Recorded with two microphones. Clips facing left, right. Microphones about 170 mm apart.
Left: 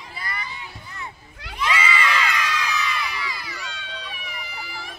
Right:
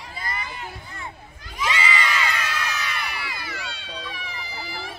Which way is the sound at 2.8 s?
55° right (ahead or behind).